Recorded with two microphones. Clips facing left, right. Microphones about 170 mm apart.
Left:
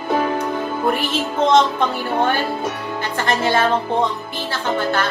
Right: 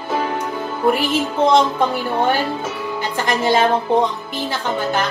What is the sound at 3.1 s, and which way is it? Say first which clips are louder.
Speech: right 1 dB; 15° right (ahead or behind).